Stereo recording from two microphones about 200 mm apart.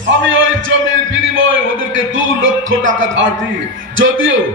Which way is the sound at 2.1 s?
70° right (ahead or behind).